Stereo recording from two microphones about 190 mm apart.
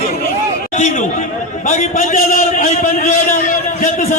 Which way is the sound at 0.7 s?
40° left (ahead or behind).